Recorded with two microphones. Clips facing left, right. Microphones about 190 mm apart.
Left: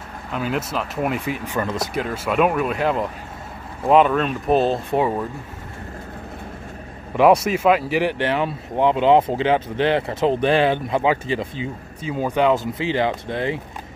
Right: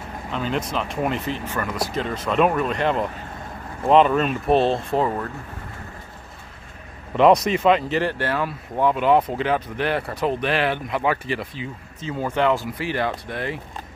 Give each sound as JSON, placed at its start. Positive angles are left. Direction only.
{"t": 0.3, "sound": "speech", "side_deg": 5}
{"t": 4.9, "sound": "speech", "side_deg": 10}
{"t": 7.2, "sound": "speech", "side_deg": 5}